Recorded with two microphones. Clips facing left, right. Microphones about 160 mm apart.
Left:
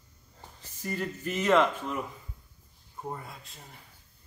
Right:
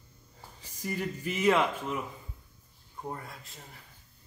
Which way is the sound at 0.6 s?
10° right (ahead or behind).